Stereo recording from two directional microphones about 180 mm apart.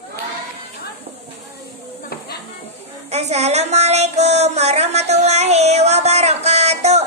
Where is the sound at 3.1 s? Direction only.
35° right (ahead or behind).